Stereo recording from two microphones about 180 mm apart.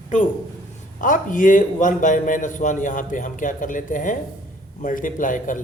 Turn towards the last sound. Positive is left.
turn(degrees=45)  # may be behind; listen again after turning